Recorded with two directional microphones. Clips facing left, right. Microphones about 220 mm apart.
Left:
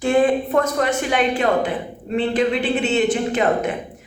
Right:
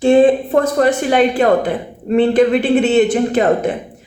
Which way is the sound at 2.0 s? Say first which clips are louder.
Right 8 dB; 50° right (ahead or behind).